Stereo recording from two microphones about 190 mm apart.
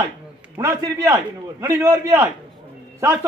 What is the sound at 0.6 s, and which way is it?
A man's voice, 20° right (ahead or behind).